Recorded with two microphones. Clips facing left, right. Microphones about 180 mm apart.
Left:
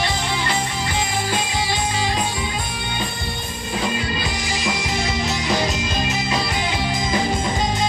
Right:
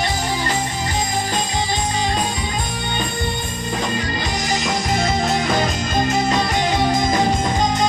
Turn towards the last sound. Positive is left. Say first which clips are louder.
# right 5 dB
turn(degrees=-45)  # may be behind; listen again after turning